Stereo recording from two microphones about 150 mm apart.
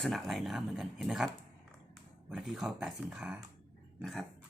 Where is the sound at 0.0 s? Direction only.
Centre (ahead or behind).